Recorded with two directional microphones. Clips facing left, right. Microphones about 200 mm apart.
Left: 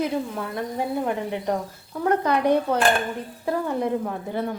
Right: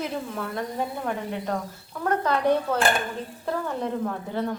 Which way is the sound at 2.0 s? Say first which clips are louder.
Left 3 dB; 15° left (ahead or behind).